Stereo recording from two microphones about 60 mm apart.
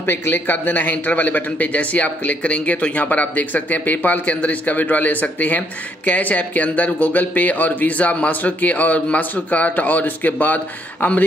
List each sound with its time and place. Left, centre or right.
0.0 s speech: left